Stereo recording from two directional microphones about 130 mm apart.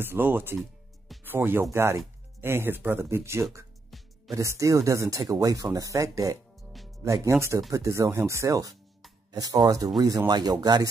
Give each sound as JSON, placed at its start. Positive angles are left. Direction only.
{"t": 0.0, "sound": "speech", "side_deg": -15}
{"t": 0.6, "sound": "music", "side_deg": 0}
{"t": 1.2, "sound": "speech", "side_deg": -15}
{"t": 3.9, "sound": "music", "side_deg": 0}
{"t": 4.3, "sound": "speech", "side_deg": -25}